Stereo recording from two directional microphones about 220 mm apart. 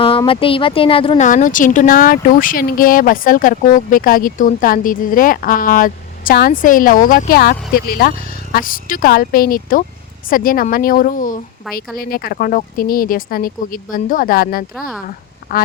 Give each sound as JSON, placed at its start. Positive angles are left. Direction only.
{"t": 0.0, "sound": "speech", "side_deg": 25}
{"t": 1.3, "sound": "speech", "side_deg": 35}